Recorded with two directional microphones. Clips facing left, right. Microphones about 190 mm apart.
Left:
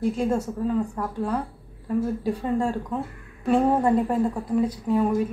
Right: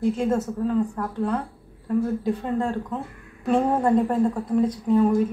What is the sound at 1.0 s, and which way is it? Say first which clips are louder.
Speech: even; 15° left (ahead or behind).